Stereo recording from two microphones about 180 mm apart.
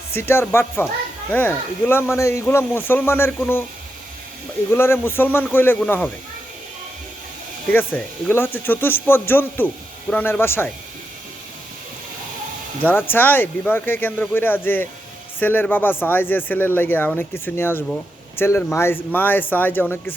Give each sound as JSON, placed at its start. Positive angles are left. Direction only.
{"t": 0.2, "sound": "speech", "side_deg": 10}
{"t": 4.7, "sound": "speech", "side_deg": 15}
{"t": 7.7, "sound": "speech", "side_deg": 10}
{"t": 12.8, "sound": "speech", "side_deg": 10}